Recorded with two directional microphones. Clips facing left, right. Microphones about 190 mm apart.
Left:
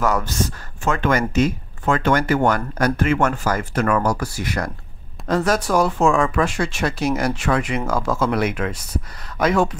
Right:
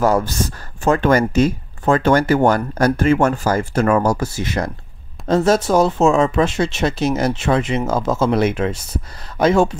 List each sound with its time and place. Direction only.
0.0 s speech: 30° right (ahead or behind)